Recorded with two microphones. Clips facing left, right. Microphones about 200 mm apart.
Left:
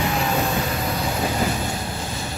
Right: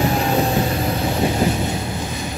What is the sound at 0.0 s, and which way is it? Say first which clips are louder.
Train: right 4 dB; 35° right (ahead or behind).